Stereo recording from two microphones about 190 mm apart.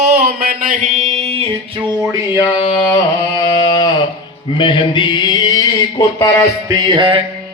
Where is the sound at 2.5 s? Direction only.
30° left (ahead or behind).